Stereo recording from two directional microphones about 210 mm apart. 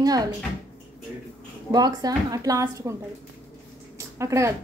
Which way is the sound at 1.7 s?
20° right (ahead or behind).